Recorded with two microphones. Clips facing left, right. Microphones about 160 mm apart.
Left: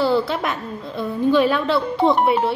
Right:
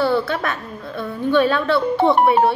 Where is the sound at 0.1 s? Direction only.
20° left (ahead or behind).